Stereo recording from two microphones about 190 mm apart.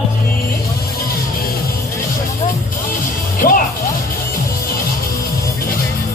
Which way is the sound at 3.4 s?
45° left (ahead or behind).